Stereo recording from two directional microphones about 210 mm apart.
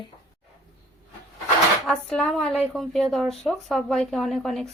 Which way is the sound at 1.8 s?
5° left (ahead or behind).